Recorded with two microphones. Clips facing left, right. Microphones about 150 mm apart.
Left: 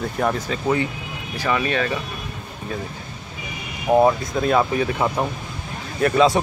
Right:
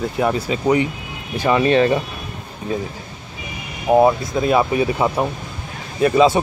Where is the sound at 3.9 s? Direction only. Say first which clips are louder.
Right 2 dB; 10° right (ahead or behind).